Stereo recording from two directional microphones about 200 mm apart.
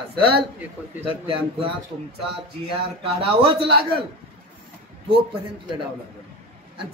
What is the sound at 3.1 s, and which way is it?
Speech, 30° right (ahead or behind).